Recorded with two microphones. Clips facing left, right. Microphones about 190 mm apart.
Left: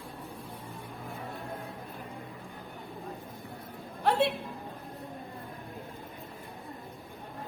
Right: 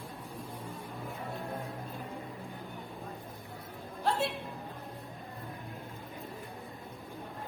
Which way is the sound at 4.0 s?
65° left (ahead or behind).